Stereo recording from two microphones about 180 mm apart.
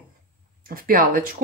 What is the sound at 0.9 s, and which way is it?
Speech, 50° right (ahead or behind).